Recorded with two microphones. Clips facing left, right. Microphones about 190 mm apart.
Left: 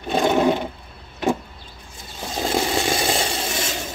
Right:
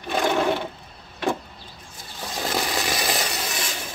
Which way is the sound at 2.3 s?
25° left (ahead or behind).